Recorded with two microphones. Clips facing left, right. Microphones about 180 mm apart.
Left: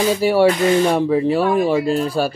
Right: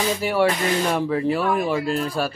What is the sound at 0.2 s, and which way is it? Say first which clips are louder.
Speech: left 7 dB; 30° left (ahead or behind).